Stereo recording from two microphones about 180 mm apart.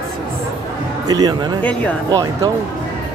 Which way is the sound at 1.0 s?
20° right (ahead or behind).